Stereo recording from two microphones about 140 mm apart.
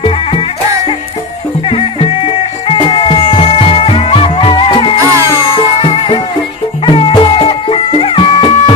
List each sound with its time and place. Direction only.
0.0 s music: 45° left (ahead or behind)
1.6 s music: 40° left (ahead or behind)
4.9 s music: 20° right (ahead or behind)
5.5 s music: 40° left (ahead or behind)